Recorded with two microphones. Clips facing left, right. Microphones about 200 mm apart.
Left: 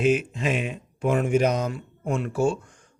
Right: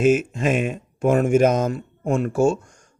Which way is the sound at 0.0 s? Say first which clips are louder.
Right 4 dB; 45° right (ahead or behind).